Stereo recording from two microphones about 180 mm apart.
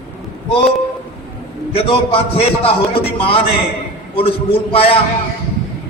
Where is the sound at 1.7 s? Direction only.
30° left (ahead or behind).